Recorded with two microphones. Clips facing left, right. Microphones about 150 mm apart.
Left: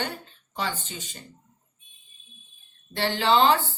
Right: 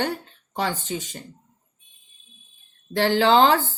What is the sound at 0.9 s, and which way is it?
Speech, 60° right (ahead or behind).